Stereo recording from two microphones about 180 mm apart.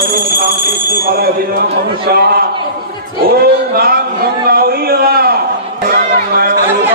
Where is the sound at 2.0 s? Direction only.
60° right (ahead or behind).